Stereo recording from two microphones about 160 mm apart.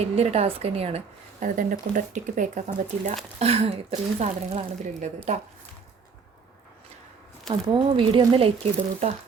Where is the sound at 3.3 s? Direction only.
40° right (ahead or behind).